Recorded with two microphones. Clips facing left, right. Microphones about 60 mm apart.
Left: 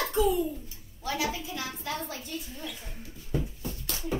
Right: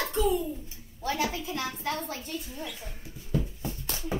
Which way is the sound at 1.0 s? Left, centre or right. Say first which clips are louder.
Right 1 dB; right.